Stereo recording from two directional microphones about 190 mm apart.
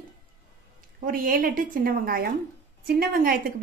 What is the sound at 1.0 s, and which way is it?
A woman's voice, 50° right (ahead or behind).